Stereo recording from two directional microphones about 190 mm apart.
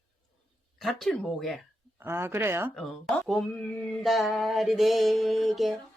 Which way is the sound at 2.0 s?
10° right (ahead or behind).